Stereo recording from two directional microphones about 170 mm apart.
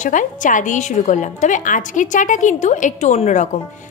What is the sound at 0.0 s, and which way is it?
A woman's voice, 50° left (ahead or behind).